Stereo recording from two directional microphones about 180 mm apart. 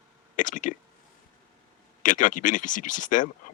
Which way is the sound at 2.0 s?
45° left (ahead or behind).